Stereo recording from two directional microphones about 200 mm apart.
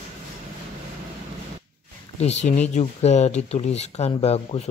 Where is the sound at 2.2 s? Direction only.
35° left (ahead or behind).